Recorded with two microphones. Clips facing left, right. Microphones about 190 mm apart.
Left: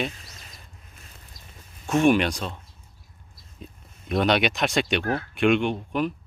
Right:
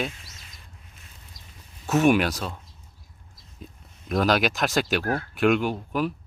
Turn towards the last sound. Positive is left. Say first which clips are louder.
# left 1 dB
turn(degrees=-5)  # may be behind; listen again after turning